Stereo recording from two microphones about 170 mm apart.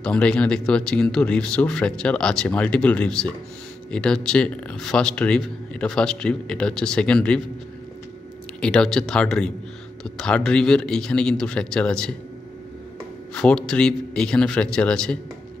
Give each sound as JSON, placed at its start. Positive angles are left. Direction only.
{"t": 0.0, "sound": "speech", "side_deg": 5}
{"t": 8.5, "sound": "speech", "side_deg": 5}
{"t": 13.3, "sound": "speech", "side_deg": 5}